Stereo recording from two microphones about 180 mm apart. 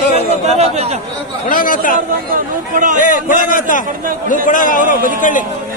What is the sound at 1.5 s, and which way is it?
Speech, 50° left (ahead or behind).